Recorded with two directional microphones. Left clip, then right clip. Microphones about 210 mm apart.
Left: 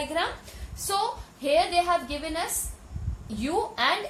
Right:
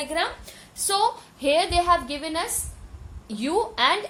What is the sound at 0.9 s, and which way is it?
A woman's voice, 50° right (ahead or behind).